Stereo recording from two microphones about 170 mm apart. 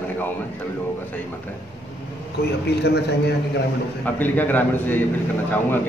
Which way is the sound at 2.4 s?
70° left (ahead or behind).